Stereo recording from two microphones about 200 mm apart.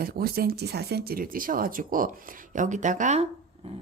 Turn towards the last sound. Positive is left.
turn(degrees=-35)  # may be behind; listen again after turning